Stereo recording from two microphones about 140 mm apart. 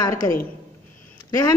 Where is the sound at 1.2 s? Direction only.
25° left (ahead or behind).